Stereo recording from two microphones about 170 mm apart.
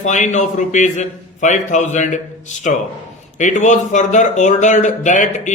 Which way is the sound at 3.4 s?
45° left (ahead or behind).